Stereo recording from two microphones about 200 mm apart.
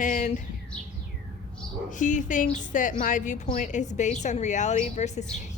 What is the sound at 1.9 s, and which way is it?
A woman's voice, 40° left (ahead or behind).